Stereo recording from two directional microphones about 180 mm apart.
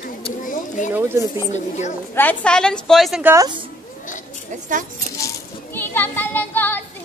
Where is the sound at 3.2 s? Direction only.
15° right (ahead or behind).